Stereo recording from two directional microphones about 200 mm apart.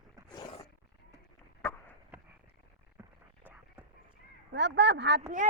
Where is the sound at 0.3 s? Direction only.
20° left (ahead or behind).